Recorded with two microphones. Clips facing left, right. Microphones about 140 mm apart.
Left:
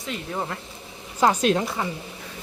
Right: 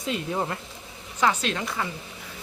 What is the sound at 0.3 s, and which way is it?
Speech, 5° right (ahead or behind).